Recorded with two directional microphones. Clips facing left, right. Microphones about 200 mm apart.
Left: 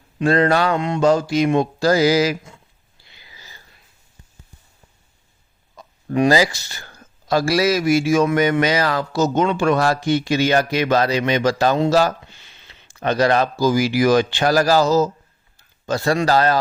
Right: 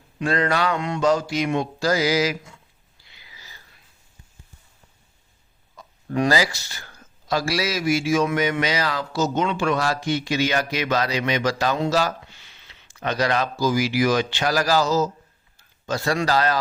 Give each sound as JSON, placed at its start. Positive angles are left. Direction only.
{"t": 0.2, "sound": "mantra", "side_deg": 30}
{"t": 3.3, "sound": "a sound", "side_deg": 30}
{"t": 6.1, "sound": "speech", "side_deg": 20}
{"t": 7.3, "sound": "a man's voice", "side_deg": 50}
{"t": 11.2, "sound": "speech", "side_deg": 30}
{"t": 11.9, "sound": "a man's voice", "side_deg": 50}
{"t": 12.3, "sound": "a sound", "side_deg": 25}
{"t": 13.0, "sound": "a man's voice", "side_deg": 50}
{"t": 16.2, "sound": "a man's voice", "side_deg": 50}